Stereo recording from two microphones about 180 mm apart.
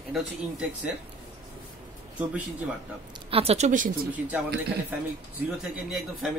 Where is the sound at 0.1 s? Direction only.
5° right (ahead or behind).